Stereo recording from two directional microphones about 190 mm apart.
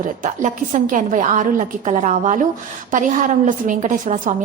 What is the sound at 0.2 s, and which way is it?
A woman's voice, 40° right (ahead or behind).